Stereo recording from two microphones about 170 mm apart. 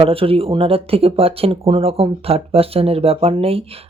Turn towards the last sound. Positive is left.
turn(degrees=-35)  # may be behind; listen again after turning